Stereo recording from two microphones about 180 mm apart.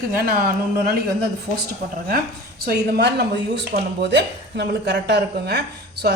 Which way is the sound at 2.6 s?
65° right (ahead or behind).